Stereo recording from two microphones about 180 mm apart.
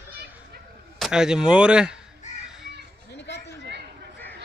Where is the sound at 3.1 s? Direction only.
70° left (ahead or behind).